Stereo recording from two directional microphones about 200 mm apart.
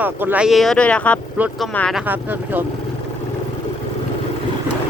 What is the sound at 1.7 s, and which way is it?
Speech, 5° left (ahead or behind).